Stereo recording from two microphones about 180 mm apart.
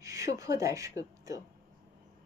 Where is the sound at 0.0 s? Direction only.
15° right (ahead or behind).